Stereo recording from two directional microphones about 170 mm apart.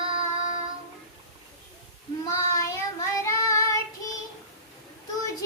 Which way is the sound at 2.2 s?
20° left (ahead or behind).